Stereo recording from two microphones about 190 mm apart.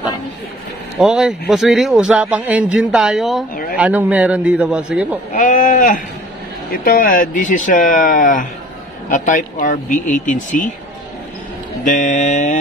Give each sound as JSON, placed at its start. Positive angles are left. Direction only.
{"t": 0.9, "sound": "a man's voice", "side_deg": 0}
{"t": 5.3, "sound": "speech", "side_deg": 45}
{"t": 11.8, "sound": "a sound", "side_deg": 40}